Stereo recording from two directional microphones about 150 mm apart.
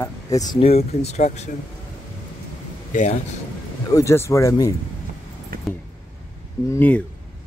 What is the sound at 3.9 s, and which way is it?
Speech, 20° left (ahead or behind).